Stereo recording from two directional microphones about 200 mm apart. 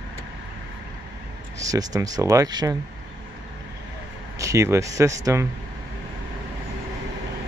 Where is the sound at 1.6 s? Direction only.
15° right (ahead or behind).